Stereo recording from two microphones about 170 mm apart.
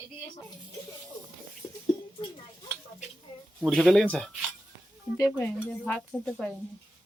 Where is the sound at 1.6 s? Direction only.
15° left (ahead or behind).